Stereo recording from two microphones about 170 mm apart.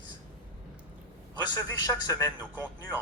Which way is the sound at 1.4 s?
25° left (ahead or behind).